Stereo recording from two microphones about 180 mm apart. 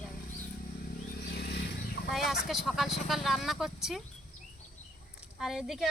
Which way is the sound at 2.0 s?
Centre (ahead or behind).